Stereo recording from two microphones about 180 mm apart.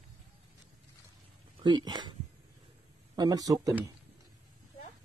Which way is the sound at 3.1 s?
20° right (ahead or behind).